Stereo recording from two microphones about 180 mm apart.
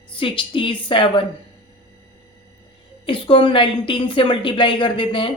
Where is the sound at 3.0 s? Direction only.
30° left (ahead or behind).